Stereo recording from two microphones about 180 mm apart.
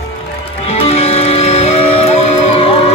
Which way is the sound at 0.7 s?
35° left (ahead or behind).